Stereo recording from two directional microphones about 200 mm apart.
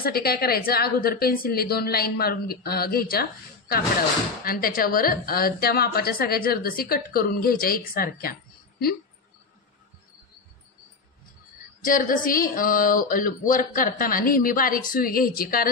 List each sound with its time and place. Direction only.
0.0 s a woman's voice: 50° left (ahead or behind)
11.8 s a woman's voice: 45° left (ahead or behind)